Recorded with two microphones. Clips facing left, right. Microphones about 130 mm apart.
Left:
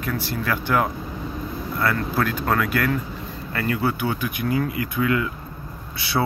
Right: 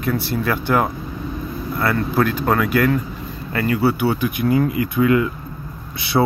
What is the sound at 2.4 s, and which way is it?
Speech, 15° right (ahead or behind).